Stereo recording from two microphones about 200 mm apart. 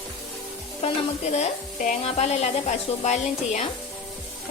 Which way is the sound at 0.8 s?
35° left (ahead or behind).